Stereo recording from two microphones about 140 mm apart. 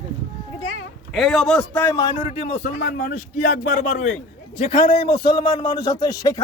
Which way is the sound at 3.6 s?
60° left (ahead or behind).